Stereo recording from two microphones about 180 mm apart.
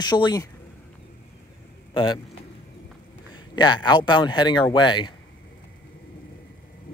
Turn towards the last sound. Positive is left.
turn(degrees=25)  # may be behind; listen again after turning